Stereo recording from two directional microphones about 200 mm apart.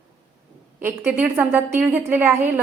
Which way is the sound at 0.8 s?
10° right (ahead or behind).